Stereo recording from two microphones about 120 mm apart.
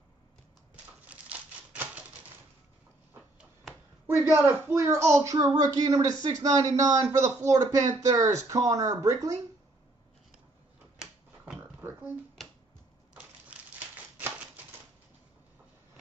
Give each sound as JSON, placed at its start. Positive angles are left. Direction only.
{"t": 1.3, "sound": "typewriter", "side_deg": -10}
{"t": 4.2, "sound": "a man's voice", "side_deg": -10}
{"t": 4.7, "sound": "a woman's voice", "side_deg": -25}